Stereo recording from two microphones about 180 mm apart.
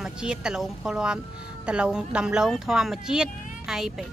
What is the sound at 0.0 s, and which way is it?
Speech, 5° right (ahead or behind).